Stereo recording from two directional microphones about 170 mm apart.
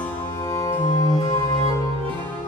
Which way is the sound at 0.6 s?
20° left (ahead or behind).